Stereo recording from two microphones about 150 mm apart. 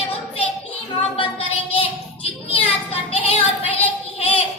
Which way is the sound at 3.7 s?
40° left (ahead or behind).